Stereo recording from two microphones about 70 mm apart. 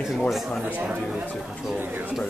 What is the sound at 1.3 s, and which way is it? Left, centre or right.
Speech, centre.